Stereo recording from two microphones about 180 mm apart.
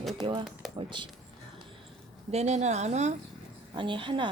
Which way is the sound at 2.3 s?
40° right (ahead or behind).